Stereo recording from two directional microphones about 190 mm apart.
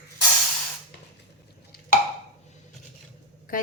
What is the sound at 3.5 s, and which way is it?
Speech, 45° left (ahead or behind).